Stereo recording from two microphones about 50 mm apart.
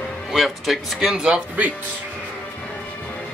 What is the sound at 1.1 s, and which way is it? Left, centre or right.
Speech, centre.